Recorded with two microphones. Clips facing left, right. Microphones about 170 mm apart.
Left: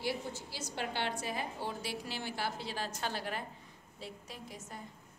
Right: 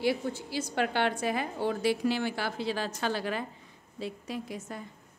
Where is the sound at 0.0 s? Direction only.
65° right (ahead or behind); by 4.8 s 85° right.